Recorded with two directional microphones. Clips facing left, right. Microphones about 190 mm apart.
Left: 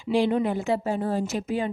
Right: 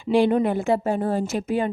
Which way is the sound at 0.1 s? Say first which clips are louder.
Right 4 dB; 55° right (ahead or behind).